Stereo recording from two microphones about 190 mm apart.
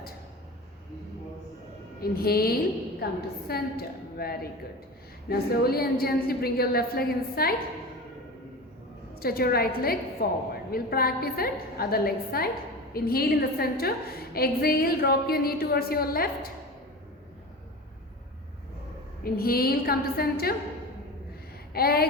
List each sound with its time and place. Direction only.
2.0 s a woman's voice: 55° left (ahead or behind)
9.1 s a woman's voice: 55° left (ahead or behind)
19.2 s a woman's voice: 50° left (ahead or behind)
21.7 s a sound: 55° left (ahead or behind)